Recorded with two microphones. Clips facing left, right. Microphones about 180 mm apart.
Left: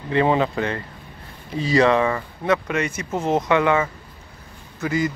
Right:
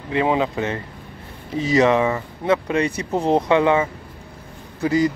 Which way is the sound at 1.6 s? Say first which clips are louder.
Right 1 dB; 20° right (ahead or behind).